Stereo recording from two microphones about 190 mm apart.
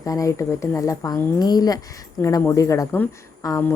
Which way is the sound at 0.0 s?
15° left (ahead or behind).